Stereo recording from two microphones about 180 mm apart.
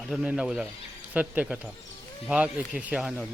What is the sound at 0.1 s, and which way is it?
Speech, 5° right (ahead or behind).